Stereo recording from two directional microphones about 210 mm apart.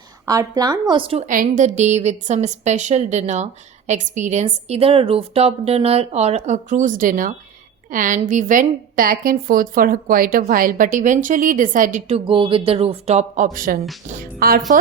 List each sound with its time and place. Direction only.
0.3 s a woman's voice: 15° right (ahead or behind)
1.3 s a woman's voice: 40° right (ahead or behind)